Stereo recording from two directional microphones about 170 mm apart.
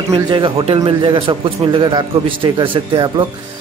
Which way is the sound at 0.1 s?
30° right (ahead or behind).